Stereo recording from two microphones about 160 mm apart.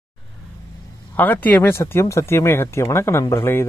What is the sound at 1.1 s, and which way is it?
Speech, 10° left (ahead or behind).